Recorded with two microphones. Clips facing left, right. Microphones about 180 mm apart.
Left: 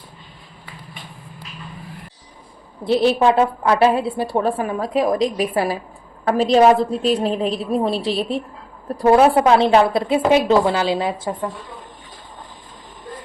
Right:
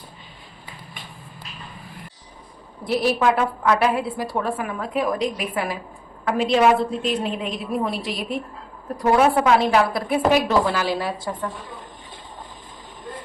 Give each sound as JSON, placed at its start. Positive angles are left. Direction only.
{"t": 2.8, "sound": "a woman's voice", "side_deg": 25}